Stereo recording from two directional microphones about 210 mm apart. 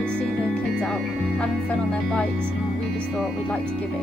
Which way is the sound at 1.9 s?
5° left (ahead or behind).